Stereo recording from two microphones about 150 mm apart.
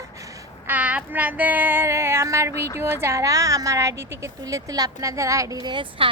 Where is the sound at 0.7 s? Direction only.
10° right (ahead or behind).